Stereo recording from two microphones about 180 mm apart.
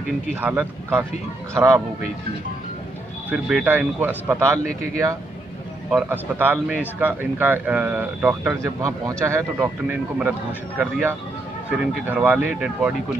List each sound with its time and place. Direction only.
0.4 s a man's voice: 10° right (ahead or behind)
3.3 s a man's voice: 5° right (ahead or behind)
5.9 s a man's voice: 10° right (ahead or behind)